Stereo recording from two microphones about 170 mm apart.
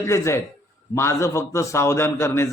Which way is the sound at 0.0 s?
15° left (ahead or behind).